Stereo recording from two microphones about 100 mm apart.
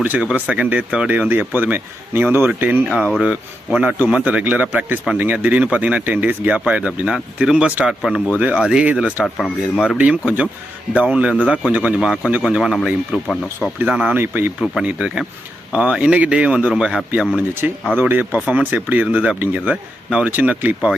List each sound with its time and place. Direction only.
0.0 s a man's voice: 15° right (ahead or behind)
9.2 s speech: 5° left (ahead or behind)
10.0 s a man's voice: 15° right (ahead or behind)
11.9 s speech: centre (ahead or behind)
13.8 s a man's voice: 10° right (ahead or behind)
14.2 s speech: 20° right (ahead or behind)
14.6 s a man's voice: 10° right (ahead or behind)